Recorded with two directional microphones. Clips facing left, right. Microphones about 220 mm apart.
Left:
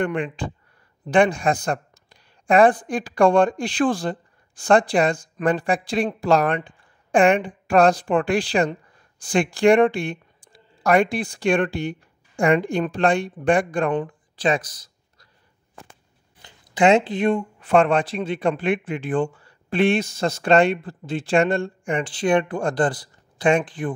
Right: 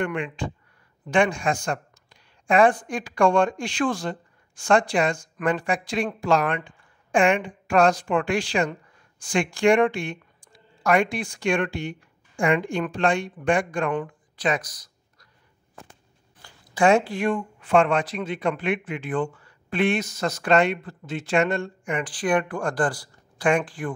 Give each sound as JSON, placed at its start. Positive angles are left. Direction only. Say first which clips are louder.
{"t": 0.0, "sound": "a woman's voice", "louder": "left 3 dB", "side_deg": 35}
{"t": 14.0, "sound": "a sound", "louder": "left 4 dB", "side_deg": 30}
{"t": 16.4, "sound": "speech", "louder": "left 2 dB", "side_deg": 20}
{"t": 17.6, "sound": "a man's voice", "louder": "left 1 dB", "side_deg": 35}